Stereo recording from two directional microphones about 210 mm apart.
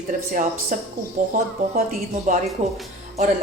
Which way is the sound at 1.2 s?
40° right (ahead or behind).